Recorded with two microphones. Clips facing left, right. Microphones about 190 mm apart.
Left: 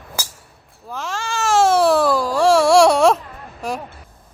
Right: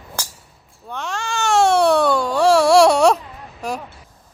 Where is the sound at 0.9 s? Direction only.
Centre (ahead or behind).